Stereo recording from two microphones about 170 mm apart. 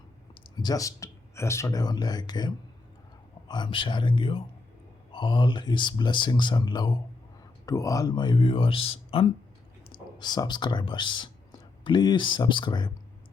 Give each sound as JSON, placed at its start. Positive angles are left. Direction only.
{"t": 0.4, "sound": "speech", "side_deg": 25}
{"t": 3.5, "sound": "speech", "side_deg": 30}